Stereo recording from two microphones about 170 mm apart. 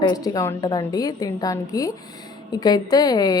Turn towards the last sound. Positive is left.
turn(degrees=25)  # may be behind; listen again after turning